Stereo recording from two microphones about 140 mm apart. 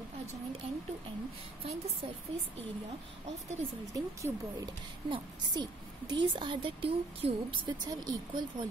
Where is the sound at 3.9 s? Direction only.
25° right (ahead or behind).